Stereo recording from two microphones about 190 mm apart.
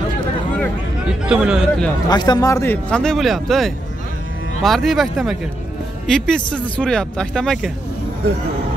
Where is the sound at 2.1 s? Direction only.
20° left (ahead or behind).